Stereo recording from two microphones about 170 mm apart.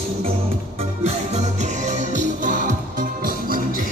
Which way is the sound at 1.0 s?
40° right (ahead or behind).